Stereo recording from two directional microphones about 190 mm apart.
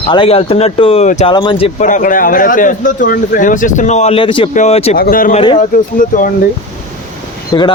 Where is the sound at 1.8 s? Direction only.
40° left (ahead or behind).